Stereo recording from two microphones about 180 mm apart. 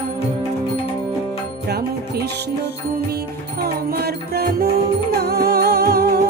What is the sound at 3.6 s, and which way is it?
Music, 60° right (ahead or behind).